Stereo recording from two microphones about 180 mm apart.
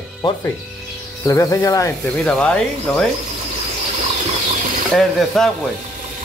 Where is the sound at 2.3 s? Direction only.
5° left (ahead or behind).